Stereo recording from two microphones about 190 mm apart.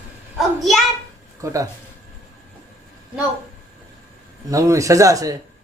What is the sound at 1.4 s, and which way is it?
Speech, 15° right (ahead or behind).